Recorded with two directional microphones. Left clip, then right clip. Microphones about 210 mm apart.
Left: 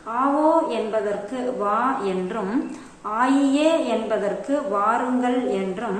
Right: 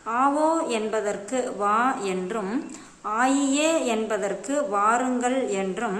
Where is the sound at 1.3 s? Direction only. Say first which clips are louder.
Even; 30° right (ahead or behind).